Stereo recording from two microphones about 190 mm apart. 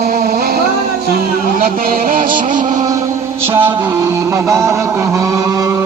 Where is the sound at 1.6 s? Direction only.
50° right (ahead or behind).